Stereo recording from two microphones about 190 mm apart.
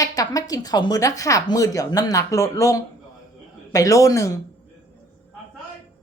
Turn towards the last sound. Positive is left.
turn(degrees=15)  # may be behind; listen again after turning